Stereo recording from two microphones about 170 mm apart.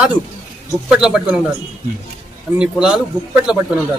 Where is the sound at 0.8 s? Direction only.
5° right (ahead or behind).